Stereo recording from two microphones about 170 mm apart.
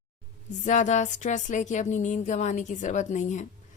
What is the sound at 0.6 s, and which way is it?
A woman's voice, 45° left (ahead or behind).